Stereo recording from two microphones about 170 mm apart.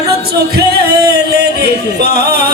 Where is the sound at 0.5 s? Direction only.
65° right (ahead or behind).